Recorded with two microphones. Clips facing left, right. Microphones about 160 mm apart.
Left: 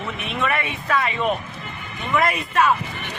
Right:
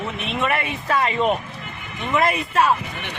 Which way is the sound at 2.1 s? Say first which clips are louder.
Right 1 dB; 30° right (ahead or behind).